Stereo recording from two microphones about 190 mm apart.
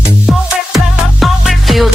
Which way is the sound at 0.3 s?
Centre (ahead or behind).